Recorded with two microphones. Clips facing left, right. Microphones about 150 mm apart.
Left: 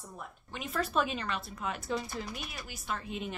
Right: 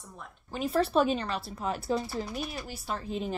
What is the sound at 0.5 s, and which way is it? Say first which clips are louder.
Speech: right 6 dB; 35° right (ahead or behind).